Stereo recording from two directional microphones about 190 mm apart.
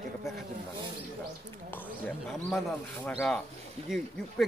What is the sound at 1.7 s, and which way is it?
Speech, 10° left (ahead or behind).